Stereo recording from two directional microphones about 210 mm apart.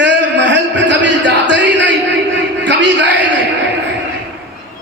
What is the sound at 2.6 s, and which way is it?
Speech, 55° right (ahead or behind).